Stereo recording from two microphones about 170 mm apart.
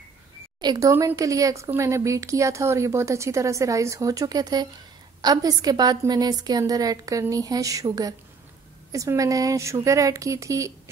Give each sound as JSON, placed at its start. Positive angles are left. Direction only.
{"t": 0.6, "sound": "a woman's voice", "side_deg": -25}